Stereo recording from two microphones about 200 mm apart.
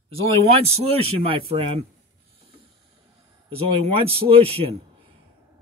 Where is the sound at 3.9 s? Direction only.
30° right (ahead or behind).